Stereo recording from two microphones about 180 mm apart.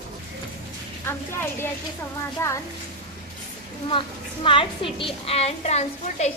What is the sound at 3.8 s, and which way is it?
A woman's voice, 30° left (ahead or behind).